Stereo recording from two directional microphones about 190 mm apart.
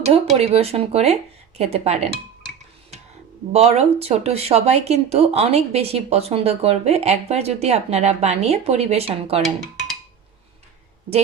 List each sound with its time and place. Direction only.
0.0 s speech: 30° right (ahead or behind)
3.5 s speech: 35° right (ahead or behind)